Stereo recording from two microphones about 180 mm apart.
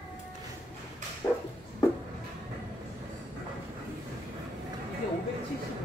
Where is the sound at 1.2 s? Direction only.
15° left (ahead or behind).